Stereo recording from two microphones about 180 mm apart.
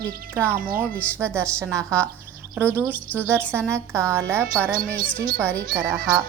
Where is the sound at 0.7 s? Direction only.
55° right (ahead or behind).